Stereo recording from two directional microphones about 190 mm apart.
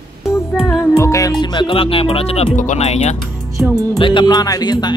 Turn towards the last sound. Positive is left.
turn(degrees=20)  # may be behind; listen again after turning